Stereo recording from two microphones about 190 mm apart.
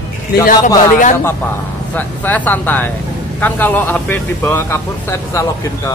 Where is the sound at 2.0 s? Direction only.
10° left (ahead or behind).